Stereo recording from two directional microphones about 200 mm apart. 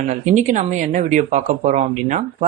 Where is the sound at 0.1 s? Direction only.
40° right (ahead or behind).